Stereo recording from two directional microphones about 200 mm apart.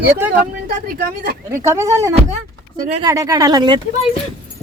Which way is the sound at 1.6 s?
15° right (ahead or behind).